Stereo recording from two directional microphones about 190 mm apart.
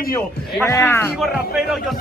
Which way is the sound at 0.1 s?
15° left (ahead or behind).